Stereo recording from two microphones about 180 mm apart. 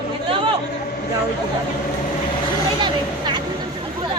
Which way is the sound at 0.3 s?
30° right (ahead or behind).